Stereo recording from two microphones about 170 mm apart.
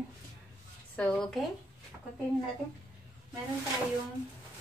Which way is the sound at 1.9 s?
10° right (ahead or behind).